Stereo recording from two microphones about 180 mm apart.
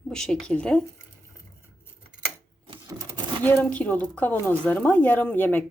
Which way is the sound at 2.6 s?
25° right (ahead or behind).